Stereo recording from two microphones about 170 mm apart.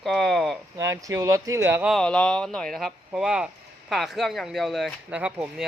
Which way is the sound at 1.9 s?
5° left (ahead or behind).